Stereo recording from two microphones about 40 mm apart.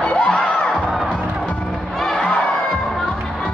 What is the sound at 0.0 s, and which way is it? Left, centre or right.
Crowd, left.